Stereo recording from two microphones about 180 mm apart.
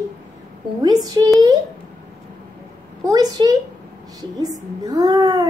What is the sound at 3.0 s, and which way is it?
A woman's voice, 20° right (ahead or behind).